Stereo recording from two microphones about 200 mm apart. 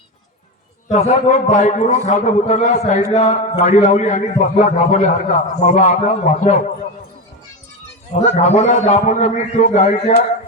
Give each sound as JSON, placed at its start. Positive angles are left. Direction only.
{"t": 0.9, "sound": "a man's voice", "side_deg": 35}
{"t": 8.1, "sound": "a man's voice", "side_deg": 35}